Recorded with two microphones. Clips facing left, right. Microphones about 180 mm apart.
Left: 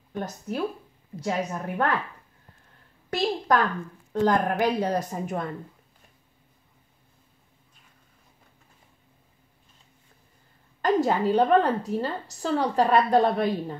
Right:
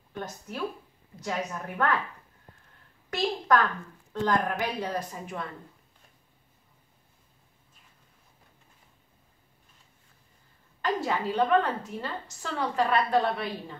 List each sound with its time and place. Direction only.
1.2 s a woman's voice: 35° left (ahead or behind)
3.2 s a woman's voice: 35° left (ahead or behind)
10.8 s a woman's voice: 40° left (ahead or behind)